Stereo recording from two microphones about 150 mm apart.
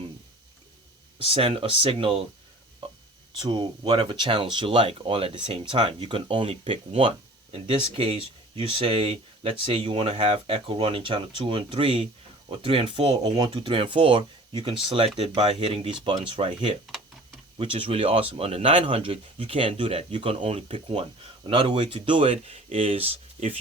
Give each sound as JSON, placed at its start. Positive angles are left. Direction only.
{"t": 1.2, "sound": "speech", "side_deg": -40}
{"t": 3.4, "sound": "speech", "side_deg": -30}